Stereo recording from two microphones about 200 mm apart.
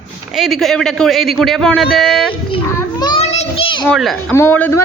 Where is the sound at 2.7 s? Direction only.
15° left (ahead or behind).